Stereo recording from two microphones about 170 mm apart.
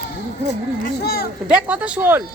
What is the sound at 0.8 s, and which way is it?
Speech, 65° left (ahead or behind).